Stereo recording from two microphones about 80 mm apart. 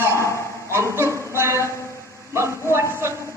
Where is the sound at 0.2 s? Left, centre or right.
Left.